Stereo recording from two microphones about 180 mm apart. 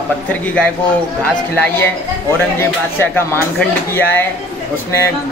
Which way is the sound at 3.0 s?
10° left (ahead or behind).